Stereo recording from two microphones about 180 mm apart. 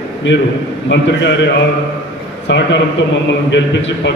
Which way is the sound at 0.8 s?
80° left.